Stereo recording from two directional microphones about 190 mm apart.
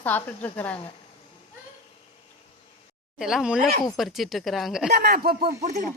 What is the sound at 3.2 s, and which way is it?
Speech, centre (ahead or behind).